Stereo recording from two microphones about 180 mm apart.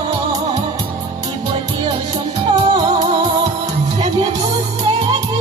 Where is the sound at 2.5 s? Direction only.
20° right (ahead or behind).